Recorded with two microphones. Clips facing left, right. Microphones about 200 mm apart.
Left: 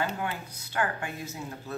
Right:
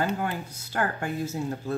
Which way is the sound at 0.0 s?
45° right (ahead or behind).